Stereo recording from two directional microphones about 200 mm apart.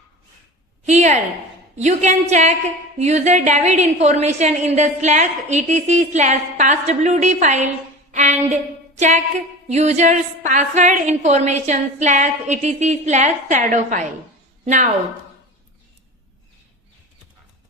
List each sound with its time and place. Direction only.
0.9 s a woman's voice: 35° right (ahead or behind)
8.1 s a sound: 35° right (ahead or behind)
9.6 s a woman's voice: 35° right (ahead or behind)